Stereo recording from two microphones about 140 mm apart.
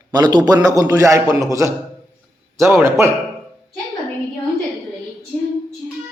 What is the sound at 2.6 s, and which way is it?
Speech, 20° right (ahead or behind).